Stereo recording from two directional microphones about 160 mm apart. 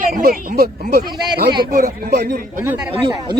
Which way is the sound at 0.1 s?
75° right (ahead or behind).